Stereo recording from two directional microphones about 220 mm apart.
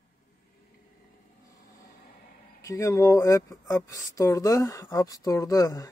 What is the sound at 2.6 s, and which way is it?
Speech, 15° left (ahead or behind).